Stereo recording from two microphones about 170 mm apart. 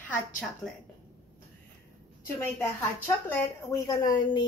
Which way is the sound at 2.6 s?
10° left (ahead or behind).